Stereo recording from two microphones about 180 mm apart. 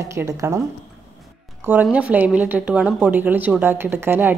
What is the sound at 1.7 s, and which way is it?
A woman's voice, 10° right (ahead or behind).